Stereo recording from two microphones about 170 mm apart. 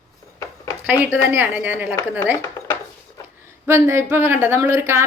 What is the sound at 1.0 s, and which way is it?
A woman's voice, 10° right (ahead or behind).